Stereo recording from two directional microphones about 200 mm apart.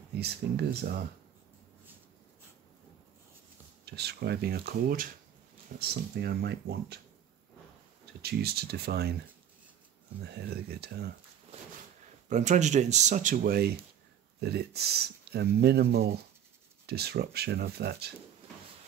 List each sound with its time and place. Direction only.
0.1 s speech: 55° right (ahead or behind)
3.8 s speech: 55° right (ahead or behind)
8.2 s speech: 50° right (ahead or behind)
10.2 s speech: 55° right (ahead or behind)
12.3 s speech: 35° right (ahead or behind); by 18.1 s 55° right (ahead or behind)